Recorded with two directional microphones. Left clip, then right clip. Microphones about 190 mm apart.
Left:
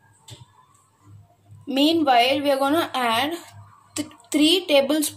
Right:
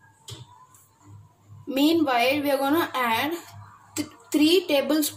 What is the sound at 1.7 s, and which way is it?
A woman's voice, 40° left (ahead or behind).